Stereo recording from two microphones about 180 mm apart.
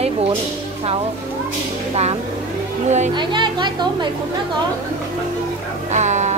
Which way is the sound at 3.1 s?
25° right (ahead or behind).